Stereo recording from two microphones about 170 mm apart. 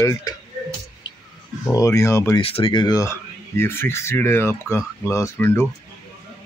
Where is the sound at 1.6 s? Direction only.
20° left (ahead or behind).